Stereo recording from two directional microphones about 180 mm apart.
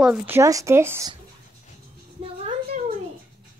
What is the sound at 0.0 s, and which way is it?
Speech, 5° right (ahead or behind).